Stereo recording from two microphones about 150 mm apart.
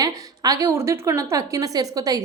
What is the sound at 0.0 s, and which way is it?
A woman's voice, 25° right (ahead or behind).